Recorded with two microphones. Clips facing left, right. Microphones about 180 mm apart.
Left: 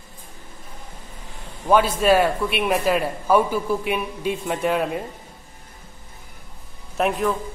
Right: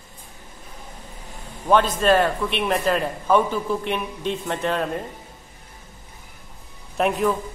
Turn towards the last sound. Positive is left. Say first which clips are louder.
# right 1 dB
turn(degrees=0)  # may be behind; listen again after turning